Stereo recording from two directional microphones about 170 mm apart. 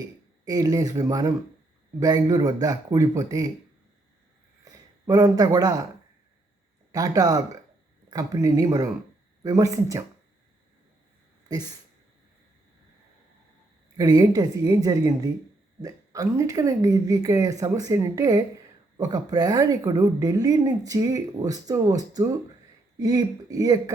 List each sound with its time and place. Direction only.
0.0 s speech: 20° right (ahead or behind)
4.6 s speech: 20° right (ahead or behind)
6.9 s speech: 20° right (ahead or behind)
13.9 s speech: 20° right (ahead or behind)